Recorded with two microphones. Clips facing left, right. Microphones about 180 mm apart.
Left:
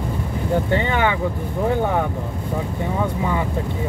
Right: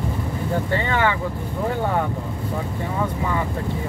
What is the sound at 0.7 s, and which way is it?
Speech, 20° left (ahead or behind).